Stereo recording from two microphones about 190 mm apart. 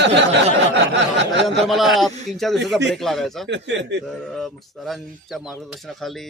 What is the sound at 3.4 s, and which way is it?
Speech, 65° right (ahead or behind).